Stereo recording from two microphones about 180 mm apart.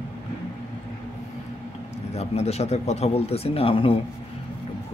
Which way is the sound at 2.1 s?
35° left (ahead or behind).